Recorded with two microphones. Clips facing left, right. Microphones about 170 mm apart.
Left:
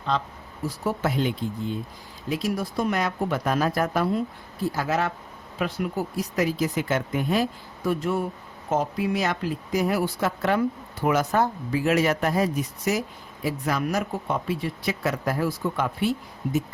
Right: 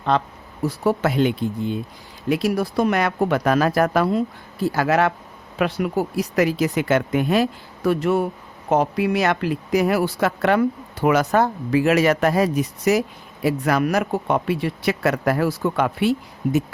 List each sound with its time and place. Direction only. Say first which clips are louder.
0.1 s speech: right 6 dB; 65° right (ahead or behind)
0.9 s speech: right 6 dB; 75° right (ahead or behind)
4.6 s speech: right 6 dB; 75° right (ahead or behind)